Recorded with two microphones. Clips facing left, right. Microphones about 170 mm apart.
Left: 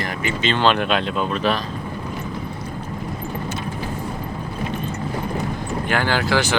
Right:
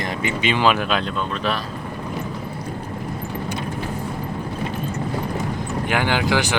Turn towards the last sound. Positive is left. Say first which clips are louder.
# even
turn(degrees=-15)  # may be behind; listen again after turning